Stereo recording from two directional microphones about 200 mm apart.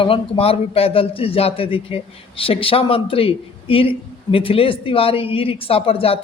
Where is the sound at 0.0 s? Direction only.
30° left (ahead or behind).